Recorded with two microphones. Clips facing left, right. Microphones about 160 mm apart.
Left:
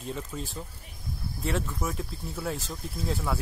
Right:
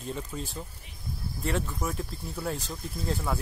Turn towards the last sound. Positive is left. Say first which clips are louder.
# even
turn(degrees=0)  # may be behind; listen again after turning